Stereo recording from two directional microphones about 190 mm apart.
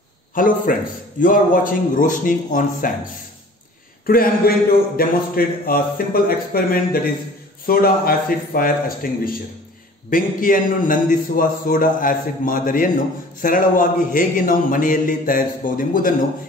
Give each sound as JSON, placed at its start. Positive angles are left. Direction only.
{"t": 0.3, "sound": "a man's voice", "side_deg": 45}
{"t": 4.0, "sound": "a man's voice", "side_deg": 50}